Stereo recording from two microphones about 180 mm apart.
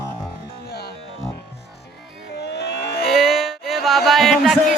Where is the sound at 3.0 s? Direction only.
Centre (ahead or behind).